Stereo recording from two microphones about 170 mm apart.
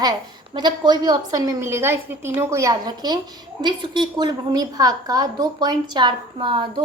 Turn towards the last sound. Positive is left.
turn(degrees=-30)  # may be behind; listen again after turning